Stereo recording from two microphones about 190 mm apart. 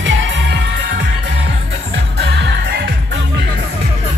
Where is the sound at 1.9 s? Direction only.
70° right (ahead or behind).